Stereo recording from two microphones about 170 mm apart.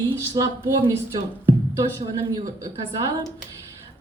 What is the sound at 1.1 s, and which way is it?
Music, 25° right (ahead or behind).